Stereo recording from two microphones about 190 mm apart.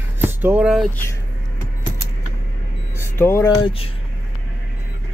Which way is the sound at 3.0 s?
15° left (ahead or behind).